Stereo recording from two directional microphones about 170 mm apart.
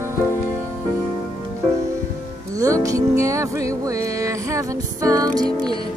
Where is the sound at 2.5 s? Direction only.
20° right (ahead or behind).